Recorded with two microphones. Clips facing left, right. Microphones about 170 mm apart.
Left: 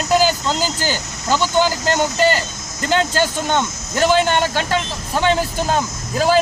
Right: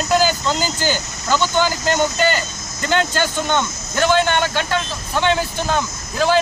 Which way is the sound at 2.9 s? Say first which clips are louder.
Left 1 dB; 35° left (ahead or behind).